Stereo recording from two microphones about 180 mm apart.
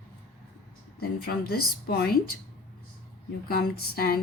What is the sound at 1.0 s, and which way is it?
Speech, 60° left (ahead or behind).